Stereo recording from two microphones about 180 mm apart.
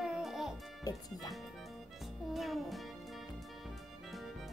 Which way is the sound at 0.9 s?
20° left (ahead or behind).